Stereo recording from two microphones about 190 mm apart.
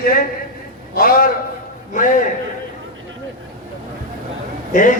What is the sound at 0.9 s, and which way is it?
A man's voice, 50° left (ahead or behind).